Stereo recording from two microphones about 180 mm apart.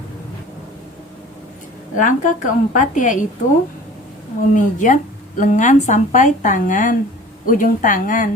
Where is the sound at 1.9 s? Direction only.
45° left (ahead or behind).